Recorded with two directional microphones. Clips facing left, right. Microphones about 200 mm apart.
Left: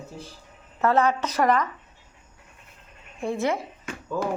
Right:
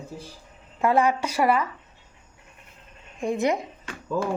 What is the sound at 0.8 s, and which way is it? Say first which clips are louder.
Speech: even; 10° right (ahead or behind).